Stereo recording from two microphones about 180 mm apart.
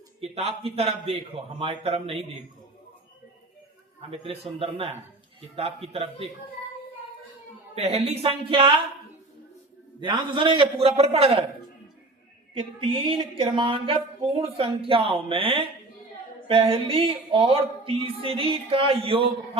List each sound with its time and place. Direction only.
0.2 s speech: 35° right (ahead or behind)
4.2 s speech: 35° right (ahead or behind)
7.8 s speech: 35° right (ahead or behind)
10.0 s speech: 25° right (ahead or behind)
12.5 s a sound: 30° right (ahead or behind)
16.5 s speech: 30° right (ahead or behind)